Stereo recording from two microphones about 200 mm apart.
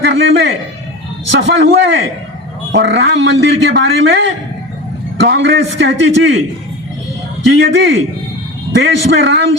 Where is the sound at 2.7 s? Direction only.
60° right (ahead or behind).